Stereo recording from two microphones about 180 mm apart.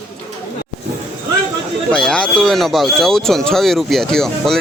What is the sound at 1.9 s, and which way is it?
Speech, 5° left (ahead or behind).